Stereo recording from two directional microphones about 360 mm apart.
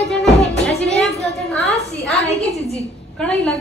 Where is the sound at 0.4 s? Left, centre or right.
Centre.